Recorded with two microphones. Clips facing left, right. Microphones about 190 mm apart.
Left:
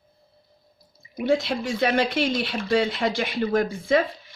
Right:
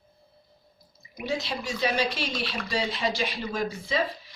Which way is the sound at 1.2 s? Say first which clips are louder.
Left 8 dB; 55° left (ahead or behind).